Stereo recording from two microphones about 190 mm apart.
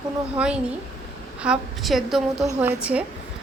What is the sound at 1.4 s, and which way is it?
A woman's voice, 5° right (ahead or behind).